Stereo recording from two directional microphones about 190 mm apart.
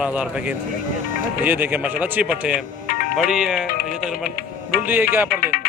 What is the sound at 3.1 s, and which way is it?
A man's voice, 5° right (ahead or behind).